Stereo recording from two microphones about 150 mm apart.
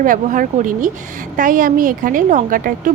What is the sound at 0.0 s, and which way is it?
Speech, 60° right (ahead or behind).